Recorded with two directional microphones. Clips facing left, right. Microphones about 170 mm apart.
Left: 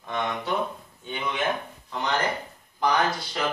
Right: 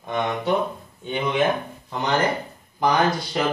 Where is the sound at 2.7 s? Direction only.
15° right (ahead or behind).